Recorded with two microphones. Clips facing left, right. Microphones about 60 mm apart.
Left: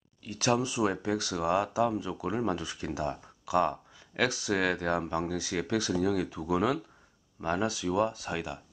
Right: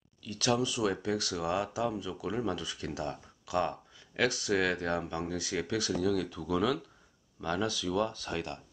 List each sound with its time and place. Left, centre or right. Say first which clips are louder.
0.2 s speech: left 2 dB; left; by 8.7 s centre